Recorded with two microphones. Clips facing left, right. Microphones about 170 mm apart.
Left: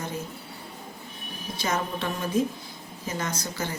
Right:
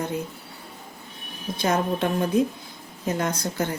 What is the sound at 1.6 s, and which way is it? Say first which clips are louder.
Speech: right 6 dB; 50° right (ahead or behind).